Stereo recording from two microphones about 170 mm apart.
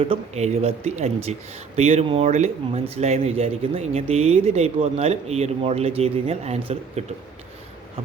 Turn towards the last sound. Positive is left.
turn(degrees=-40)  # may be behind; listen again after turning